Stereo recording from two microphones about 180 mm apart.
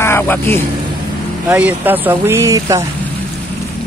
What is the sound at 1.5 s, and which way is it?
Speech, 10° right (ahead or behind).